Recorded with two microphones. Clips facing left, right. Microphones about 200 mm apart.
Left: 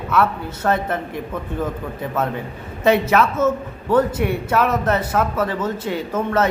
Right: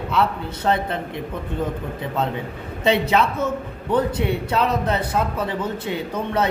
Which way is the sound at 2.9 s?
15° right (ahead or behind).